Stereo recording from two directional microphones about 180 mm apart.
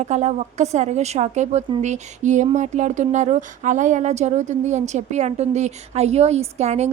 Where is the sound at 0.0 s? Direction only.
40° right (ahead or behind).